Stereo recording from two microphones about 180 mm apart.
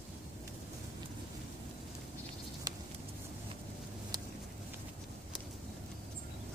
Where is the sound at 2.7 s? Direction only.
20° right (ahead or behind).